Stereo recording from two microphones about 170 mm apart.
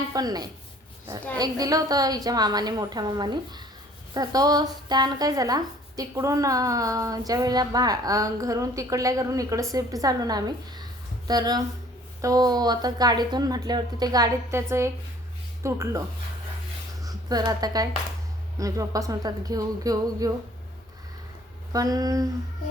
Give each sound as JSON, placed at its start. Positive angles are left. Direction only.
{"t": 0.1, "sound": "speech", "side_deg": -20}
{"t": 17.0, "sound": "speech", "side_deg": -20}
{"t": 21.7, "sound": "speech", "side_deg": -20}